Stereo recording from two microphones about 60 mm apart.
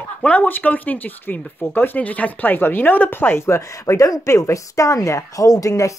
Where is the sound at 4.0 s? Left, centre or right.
Left.